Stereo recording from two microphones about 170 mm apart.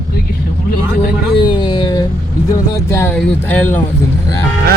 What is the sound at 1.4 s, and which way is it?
Speech, 25° left (ahead or behind).